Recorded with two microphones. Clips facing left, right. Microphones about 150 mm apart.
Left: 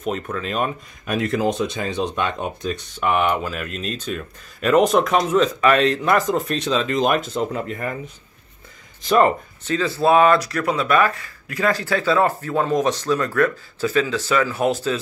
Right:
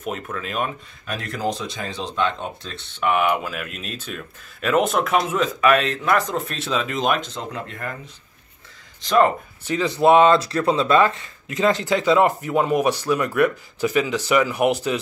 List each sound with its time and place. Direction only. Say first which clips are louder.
0.0 s speech: left 3 dB; 5° right (ahead or behind)
1.0 s speech: left 5 dB; 20° left (ahead or behind)
3.0 s speech: even; centre (ahead or behind)
9.7 s speech: right 2 dB; 15° right (ahead or behind)